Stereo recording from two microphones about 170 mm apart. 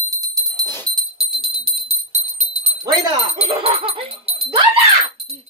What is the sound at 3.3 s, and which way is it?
Speech, 35° right (ahead or behind).